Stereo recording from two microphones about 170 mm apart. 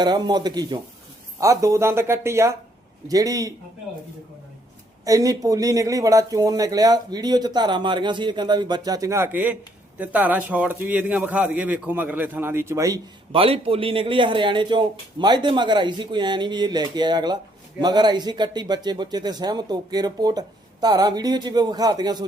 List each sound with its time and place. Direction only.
0.0 s a man's voice: 25° right (ahead or behind)
5.0 s a man's voice: 20° right (ahead or behind)
13.3 s speech: 35° right (ahead or behind)